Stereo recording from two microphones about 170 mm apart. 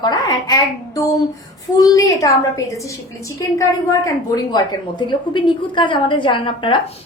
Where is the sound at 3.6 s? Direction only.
25° left (ahead or behind).